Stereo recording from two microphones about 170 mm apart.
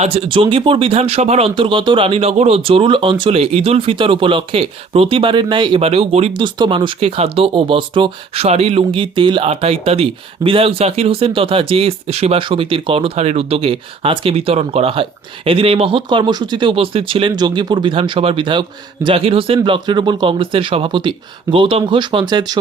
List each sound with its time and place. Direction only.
0.0 s speech: 35° right (ahead or behind)